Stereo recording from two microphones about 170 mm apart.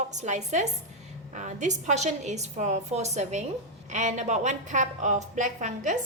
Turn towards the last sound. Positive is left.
turn(degrees=-45)  # may be behind; listen again after turning